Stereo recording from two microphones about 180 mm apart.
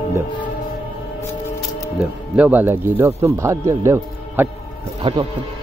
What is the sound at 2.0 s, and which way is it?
Speech, 10° right (ahead or behind).